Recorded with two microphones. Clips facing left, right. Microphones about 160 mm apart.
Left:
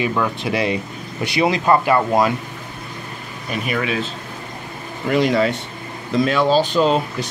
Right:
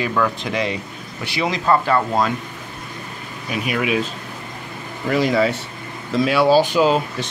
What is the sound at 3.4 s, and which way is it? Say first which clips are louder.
Speech: right 1 dB; 5° right (ahead or behind).